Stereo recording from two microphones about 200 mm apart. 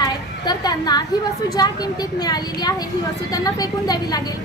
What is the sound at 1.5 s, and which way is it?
A woman's voice, 20° left (ahead or behind).